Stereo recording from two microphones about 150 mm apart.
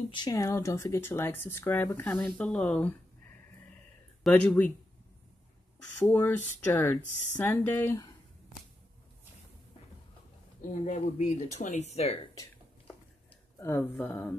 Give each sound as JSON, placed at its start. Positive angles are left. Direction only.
{"t": 0.1, "sound": "speech", "side_deg": 25}
{"t": 4.2, "sound": "speech", "side_deg": 5}
{"t": 6.0, "sound": "speech", "side_deg": 15}
{"t": 10.7, "sound": "speech", "side_deg": 50}
{"t": 13.6, "sound": "speech", "side_deg": 15}